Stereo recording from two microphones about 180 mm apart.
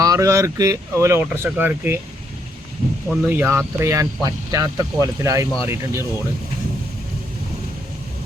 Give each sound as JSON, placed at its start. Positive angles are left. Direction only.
{"t": 0.0, "sound": "speech", "side_deg": -20}
{"t": 3.1, "sound": "speech", "side_deg": -10}